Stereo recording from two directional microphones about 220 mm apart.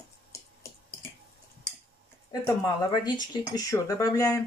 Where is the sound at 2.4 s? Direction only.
20° left (ahead or behind).